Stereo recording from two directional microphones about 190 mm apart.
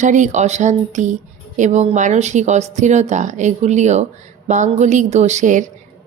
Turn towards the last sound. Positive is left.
turn(degrees=-40)  # may be behind; listen again after turning